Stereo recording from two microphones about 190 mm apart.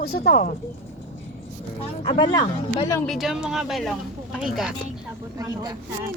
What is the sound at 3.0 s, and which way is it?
Speech, centre (ahead or behind).